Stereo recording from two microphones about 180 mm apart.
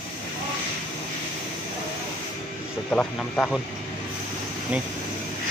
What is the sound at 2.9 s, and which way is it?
Speech, 5° left (ahead or behind).